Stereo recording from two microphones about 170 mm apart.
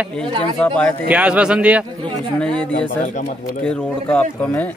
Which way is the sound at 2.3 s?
5° left (ahead or behind).